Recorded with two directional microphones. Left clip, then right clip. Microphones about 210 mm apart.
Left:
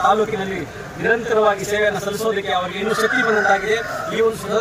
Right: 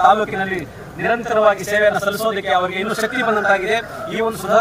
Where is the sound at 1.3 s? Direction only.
20° right (ahead or behind).